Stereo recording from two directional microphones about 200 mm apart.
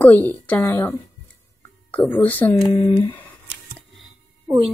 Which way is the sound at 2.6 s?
25° left (ahead or behind).